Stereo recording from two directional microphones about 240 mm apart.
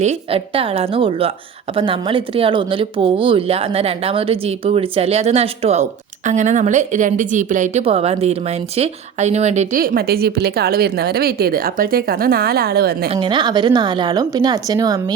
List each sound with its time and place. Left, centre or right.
0.0 s speech: right
13.1 s a woman's voice: centre